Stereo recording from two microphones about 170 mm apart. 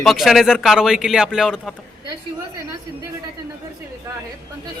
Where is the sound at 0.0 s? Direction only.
Centre (ahead or behind).